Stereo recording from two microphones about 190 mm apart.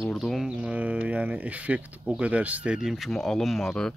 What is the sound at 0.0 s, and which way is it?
Speech, centre (ahead or behind).